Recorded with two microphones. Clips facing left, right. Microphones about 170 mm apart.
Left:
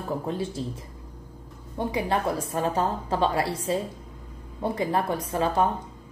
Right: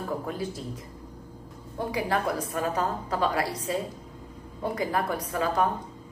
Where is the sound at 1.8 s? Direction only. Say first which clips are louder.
Left 2 dB; 25° left (ahead or behind).